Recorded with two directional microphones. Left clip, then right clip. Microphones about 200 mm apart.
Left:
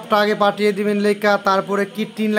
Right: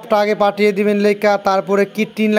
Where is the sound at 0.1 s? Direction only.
25° right (ahead or behind).